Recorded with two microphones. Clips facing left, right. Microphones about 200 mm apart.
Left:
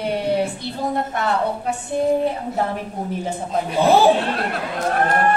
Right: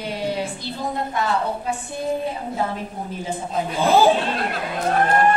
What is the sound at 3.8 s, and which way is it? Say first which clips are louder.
Speech: left 2 dB; 65° left (ahead or behind).